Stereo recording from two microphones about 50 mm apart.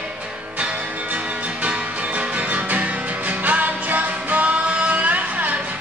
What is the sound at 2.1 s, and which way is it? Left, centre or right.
Music, right.